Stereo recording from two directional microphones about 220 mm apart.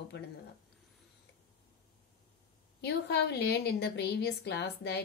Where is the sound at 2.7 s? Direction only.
50° left (ahead or behind).